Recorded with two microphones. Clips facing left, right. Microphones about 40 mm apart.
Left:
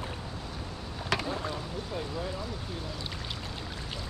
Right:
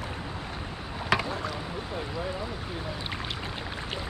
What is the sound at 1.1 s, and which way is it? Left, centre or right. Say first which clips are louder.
Boat: right 5 dB; centre.